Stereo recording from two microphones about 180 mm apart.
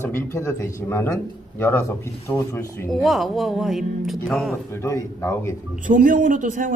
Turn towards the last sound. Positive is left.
turn(degrees=-45)  # may be behind; listen again after turning